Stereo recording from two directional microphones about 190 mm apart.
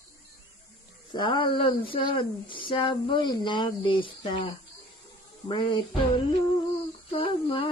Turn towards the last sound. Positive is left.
turn(degrees=30)  # may be behind; listen again after turning